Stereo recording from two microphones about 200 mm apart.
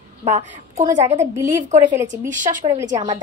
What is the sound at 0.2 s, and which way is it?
A woman's voice, 35° right (ahead or behind).